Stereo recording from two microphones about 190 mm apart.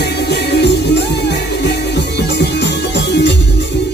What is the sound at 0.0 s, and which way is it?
Music, 60° left (ahead or behind).